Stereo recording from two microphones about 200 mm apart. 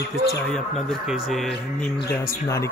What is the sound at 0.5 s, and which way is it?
Speech, 5° left (ahead or behind).